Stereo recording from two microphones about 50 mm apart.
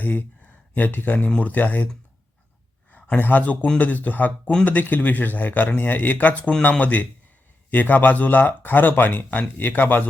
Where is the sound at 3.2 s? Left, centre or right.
Left.